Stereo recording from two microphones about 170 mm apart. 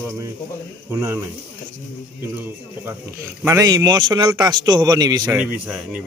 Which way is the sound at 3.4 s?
20° right (ahead or behind).